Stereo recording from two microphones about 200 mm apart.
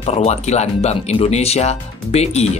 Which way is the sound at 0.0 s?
30° left (ahead or behind).